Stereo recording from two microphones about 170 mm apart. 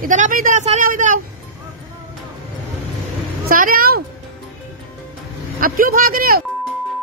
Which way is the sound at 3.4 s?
55° right (ahead or behind).